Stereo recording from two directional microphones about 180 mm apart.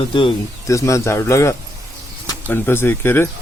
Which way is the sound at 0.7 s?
15° left (ahead or behind).